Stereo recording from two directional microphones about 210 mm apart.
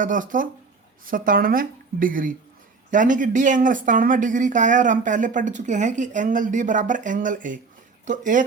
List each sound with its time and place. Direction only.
0.0 s speech: 40° right (ahead or behind)